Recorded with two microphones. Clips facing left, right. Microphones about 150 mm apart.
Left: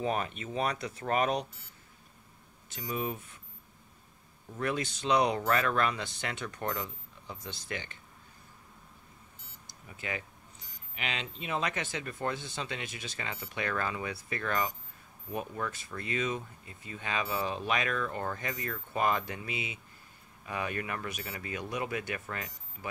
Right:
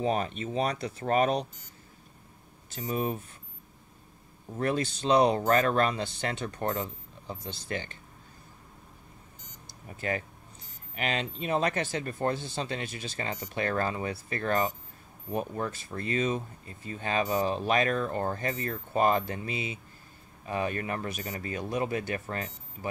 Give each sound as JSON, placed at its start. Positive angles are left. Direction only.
{"t": 0.0, "sound": "speech", "side_deg": -35}
{"t": 2.7, "sound": "speech", "side_deg": -30}
{"t": 4.6, "sound": "speech", "side_deg": -35}
{"t": 9.8, "sound": "speech", "side_deg": -40}